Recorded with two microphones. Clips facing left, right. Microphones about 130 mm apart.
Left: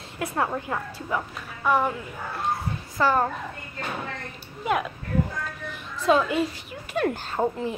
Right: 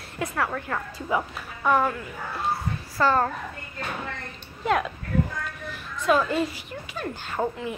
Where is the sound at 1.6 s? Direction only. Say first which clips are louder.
Right 1 dB; 10° left (ahead or behind).